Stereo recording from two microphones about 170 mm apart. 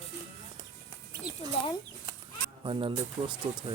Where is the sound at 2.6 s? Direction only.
30° right (ahead or behind).